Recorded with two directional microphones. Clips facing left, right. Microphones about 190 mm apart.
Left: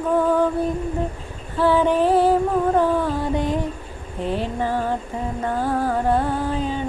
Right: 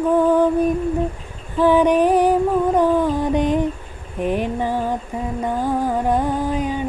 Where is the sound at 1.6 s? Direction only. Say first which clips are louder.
Right 3 dB; 15° right (ahead or behind).